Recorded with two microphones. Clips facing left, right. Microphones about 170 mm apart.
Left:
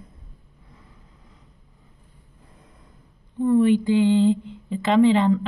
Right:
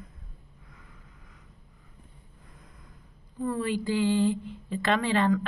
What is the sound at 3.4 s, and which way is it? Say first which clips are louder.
A woman's voice: left 11 dB; 20° left (ahead or behind).